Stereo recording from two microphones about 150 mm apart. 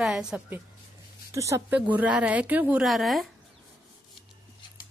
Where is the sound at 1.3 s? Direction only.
20° right (ahead or behind).